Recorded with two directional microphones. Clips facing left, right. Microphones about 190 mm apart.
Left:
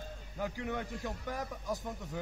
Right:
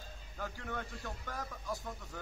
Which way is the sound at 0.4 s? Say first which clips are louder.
Left 5 dB; 15° left (ahead or behind).